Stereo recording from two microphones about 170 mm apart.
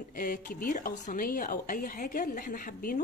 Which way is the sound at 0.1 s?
55° left (ahead or behind).